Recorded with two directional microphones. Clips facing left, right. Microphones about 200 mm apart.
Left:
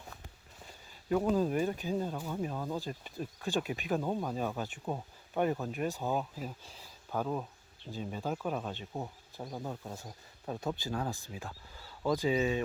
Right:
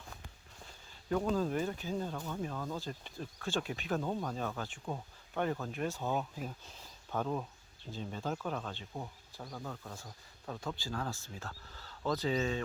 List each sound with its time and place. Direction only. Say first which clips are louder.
1.1 s speech: left 3 dB; 15° left (ahead or behind)